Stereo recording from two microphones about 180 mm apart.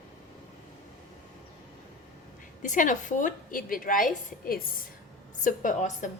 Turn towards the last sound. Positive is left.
turn(degrees=45)  # may be behind; listen again after turning